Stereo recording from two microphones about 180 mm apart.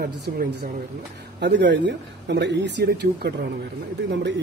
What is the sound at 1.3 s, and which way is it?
Speech, 70° right (ahead or behind).